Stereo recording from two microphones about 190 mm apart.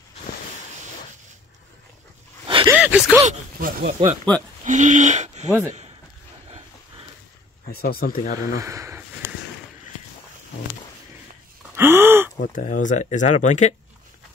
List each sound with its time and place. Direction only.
2.4 s a sound: 25° right (ahead or behind)
2.7 s speech: 10° right (ahead or behind)
3.3 s speech: 50° right (ahead or behind)
5.5 s speech: 15° right (ahead or behind)
7.7 s speech: 50° left (ahead or behind)
8.5 s speech: 15° right (ahead or behind)
11.7 s gasp: 10° right (ahead or behind)
12.4 s speech: 45° left (ahead or behind)